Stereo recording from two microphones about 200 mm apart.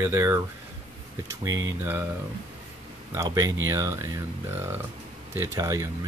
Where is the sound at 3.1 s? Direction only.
15° right (ahead or behind).